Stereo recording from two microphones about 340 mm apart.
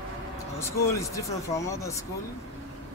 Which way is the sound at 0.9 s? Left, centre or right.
Centre.